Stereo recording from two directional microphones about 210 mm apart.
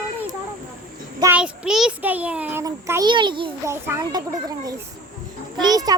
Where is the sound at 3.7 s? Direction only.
10° right (ahead or behind).